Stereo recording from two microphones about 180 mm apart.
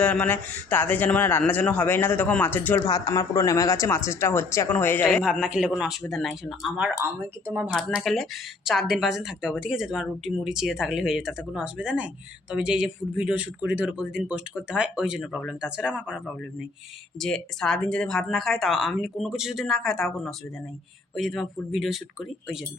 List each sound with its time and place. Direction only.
0.0 s a man's voice: 10° left (ahead or behind)
2.9 s a man's voice: 20° left (ahead or behind)
5.0 s speech: centre (ahead or behind)